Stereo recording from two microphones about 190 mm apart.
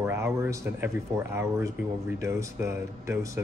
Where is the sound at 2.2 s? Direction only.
15° right (ahead or behind).